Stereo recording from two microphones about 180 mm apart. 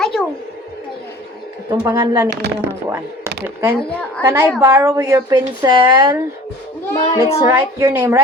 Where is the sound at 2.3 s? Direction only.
65° right (ahead or behind).